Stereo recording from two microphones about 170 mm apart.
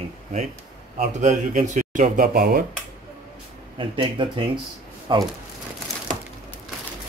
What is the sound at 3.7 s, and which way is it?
Speech, 30° right (ahead or behind).